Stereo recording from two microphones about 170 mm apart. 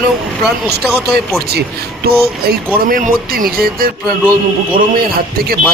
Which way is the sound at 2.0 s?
65° right (ahead or behind).